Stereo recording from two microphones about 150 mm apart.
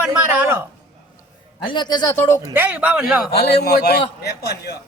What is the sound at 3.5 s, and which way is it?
A man's voice, 90° left.